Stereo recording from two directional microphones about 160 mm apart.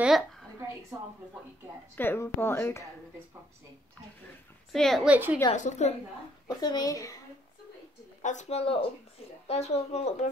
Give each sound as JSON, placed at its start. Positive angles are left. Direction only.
{"t": 0.0, "sound": "a sound", "side_deg": 0}
{"t": 2.0, "sound": "speech", "side_deg": 15}
{"t": 4.7, "sound": "a woman's voice", "side_deg": 0}
{"t": 5.1, "sound": "a woman's voice", "side_deg": -10}
{"t": 5.5, "sound": "speech", "side_deg": 45}
{"t": 6.4, "sound": "a child's voice", "side_deg": 25}
{"t": 8.2, "sound": "speech", "side_deg": 50}